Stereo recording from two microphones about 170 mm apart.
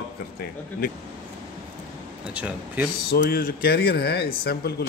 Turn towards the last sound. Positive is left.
turn(degrees=70)  # may be behind; listen again after turning